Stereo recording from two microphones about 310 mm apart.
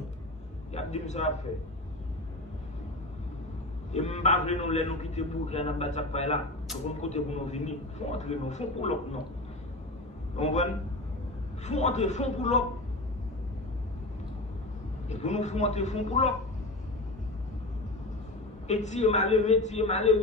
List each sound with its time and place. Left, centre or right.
0.7 s a man's voice: left
3.9 s a man's voice: left
10.3 s a man's voice: left
15.0 s a man's voice: left
18.7 s a man's voice: left